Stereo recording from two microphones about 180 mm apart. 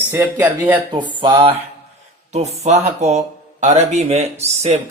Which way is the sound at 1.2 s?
30° right (ahead or behind).